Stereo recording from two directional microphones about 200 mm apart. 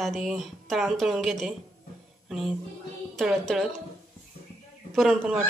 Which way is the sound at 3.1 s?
Centre (ahead or behind).